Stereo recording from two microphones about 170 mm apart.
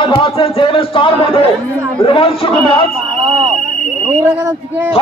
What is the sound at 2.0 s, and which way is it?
Speech, 35° left (ahead or behind).